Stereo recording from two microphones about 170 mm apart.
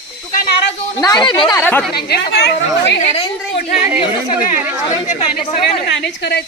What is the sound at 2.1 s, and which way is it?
Speech, 75° left (ahead or behind).